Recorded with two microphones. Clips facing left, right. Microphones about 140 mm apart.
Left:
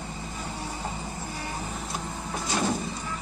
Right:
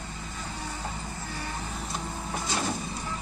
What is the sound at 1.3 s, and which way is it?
Printer, 5° left (ahead or behind).